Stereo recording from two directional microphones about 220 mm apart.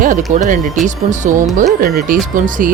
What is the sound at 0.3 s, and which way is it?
Speech, 35° right (ahead or behind).